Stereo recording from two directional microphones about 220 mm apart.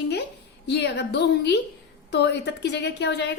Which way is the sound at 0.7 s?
50° left (ahead or behind).